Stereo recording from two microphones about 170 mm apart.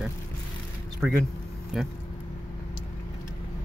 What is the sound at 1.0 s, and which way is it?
Speech, 5° right (ahead or behind).